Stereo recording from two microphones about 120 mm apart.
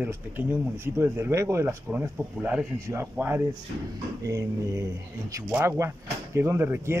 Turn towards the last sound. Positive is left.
turn(degrees=-20)  # may be behind; listen again after turning